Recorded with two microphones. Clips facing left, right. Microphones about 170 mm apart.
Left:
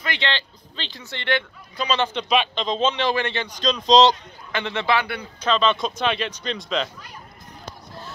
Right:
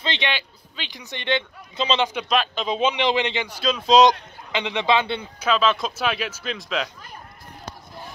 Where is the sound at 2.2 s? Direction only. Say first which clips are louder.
Left 1 dB; centre (ahead or behind); by 5.3 s 25° right (ahead or behind).